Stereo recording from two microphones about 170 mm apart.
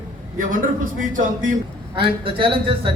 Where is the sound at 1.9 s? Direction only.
30° right (ahead or behind).